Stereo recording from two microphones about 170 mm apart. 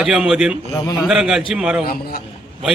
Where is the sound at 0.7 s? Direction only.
20° left (ahead or behind).